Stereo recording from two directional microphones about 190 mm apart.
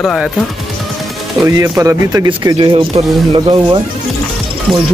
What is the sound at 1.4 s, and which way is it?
Speech, 15° right (ahead or behind).